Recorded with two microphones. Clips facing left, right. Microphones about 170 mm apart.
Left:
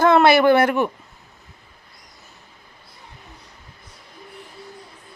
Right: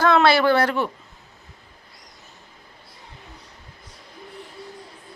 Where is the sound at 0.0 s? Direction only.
20° left (ahead or behind).